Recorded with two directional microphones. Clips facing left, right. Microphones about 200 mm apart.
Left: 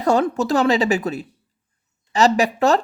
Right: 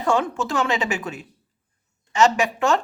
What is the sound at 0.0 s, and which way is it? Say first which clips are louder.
Speech: left 4 dB; 40° left (ahead or behind).